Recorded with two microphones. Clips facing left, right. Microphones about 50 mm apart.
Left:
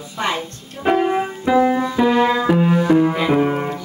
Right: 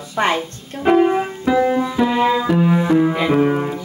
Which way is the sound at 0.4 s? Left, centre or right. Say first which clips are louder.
Right 2 dB; centre.